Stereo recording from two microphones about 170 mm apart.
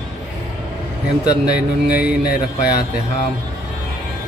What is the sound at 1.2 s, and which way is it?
Speech, 25° left (ahead or behind).